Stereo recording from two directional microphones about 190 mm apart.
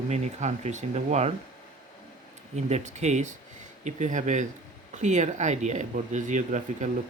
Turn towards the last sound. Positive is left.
turn(degrees=-40)  # may be behind; listen again after turning